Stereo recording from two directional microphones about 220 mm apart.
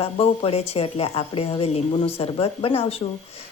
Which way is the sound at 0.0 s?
25° left (ahead or behind).